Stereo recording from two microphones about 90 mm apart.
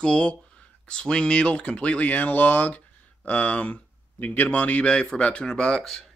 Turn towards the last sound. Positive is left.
turn(degrees=5)  # may be behind; listen again after turning